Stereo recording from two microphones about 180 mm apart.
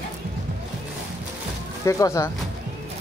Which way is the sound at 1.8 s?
15° left (ahead or behind).